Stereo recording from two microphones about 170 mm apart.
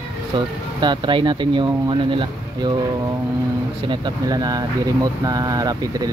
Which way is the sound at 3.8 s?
30° right (ahead or behind).